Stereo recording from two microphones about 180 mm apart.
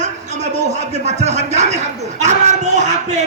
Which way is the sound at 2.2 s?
40° right (ahead or behind).